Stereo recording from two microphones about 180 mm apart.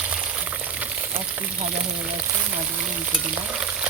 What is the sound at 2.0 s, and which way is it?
Speech, 5° right (ahead or behind).